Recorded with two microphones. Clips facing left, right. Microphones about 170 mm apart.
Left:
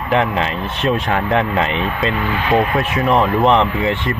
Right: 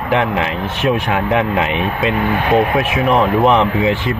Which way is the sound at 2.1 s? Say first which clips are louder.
Right 3 dB; 50° right (ahead or behind).